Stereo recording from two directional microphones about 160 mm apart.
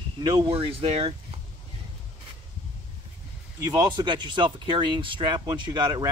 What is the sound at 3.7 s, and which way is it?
Speech, 25° right (ahead or behind).